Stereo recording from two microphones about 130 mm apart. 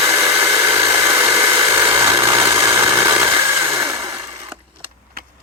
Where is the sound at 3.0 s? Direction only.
20° right (ahead or behind).